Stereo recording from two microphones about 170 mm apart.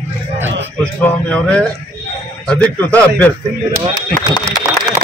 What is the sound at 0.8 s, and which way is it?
A man's voice, 10° left (ahead or behind).